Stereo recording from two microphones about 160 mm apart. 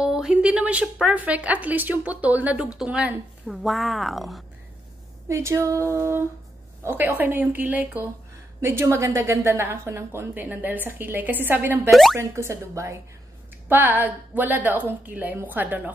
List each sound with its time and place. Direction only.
0.0 s a woman's voice: 5° right (ahead or behind)
5.3 s a woman's voice: 20° right (ahead or behind)
11.9 s speech: centre (ahead or behind)
12.2 s a woman's voice: 15° right (ahead or behind)